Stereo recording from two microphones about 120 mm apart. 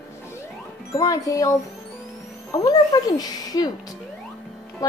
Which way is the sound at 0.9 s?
30° left (ahead or behind).